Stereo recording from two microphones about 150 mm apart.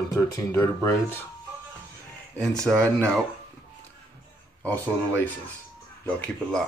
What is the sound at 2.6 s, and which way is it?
Speech, 5° left (ahead or behind).